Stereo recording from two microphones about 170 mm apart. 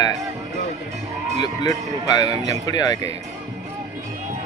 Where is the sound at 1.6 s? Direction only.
20° left (ahead or behind).